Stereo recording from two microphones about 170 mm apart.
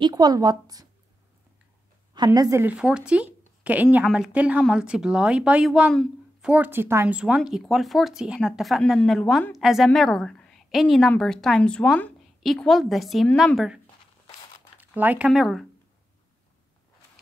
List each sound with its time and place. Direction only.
0.0 s a woman's voice: 25° right (ahead or behind)
2.1 s a woman's voice: 20° right (ahead or behind)
2.6 s a woman's voice: 5° right (ahead or behind)
14.8 s speech: 10° right (ahead or behind)